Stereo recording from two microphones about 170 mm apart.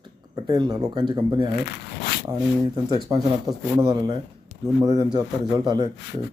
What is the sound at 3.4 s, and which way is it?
Speech, 25° right (ahead or behind).